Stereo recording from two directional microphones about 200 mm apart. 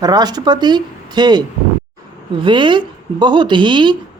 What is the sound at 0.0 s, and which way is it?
A woman's voice, 20° right (ahead or behind).